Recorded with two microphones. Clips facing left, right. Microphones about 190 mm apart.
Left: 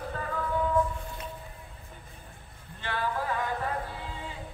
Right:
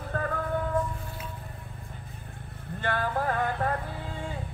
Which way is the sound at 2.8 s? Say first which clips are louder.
Right 3 dB; 50° right (ahead or behind).